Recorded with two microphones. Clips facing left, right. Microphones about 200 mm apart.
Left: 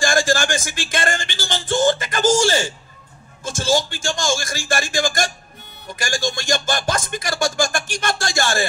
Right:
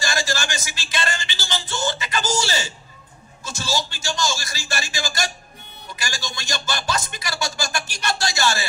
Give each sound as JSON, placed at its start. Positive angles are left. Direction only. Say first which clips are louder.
{"t": 0.0, "sound": "music", "louder": "left 7 dB", "side_deg": 50}